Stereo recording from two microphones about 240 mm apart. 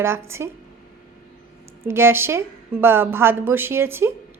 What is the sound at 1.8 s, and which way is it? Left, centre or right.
A woman's voice, centre.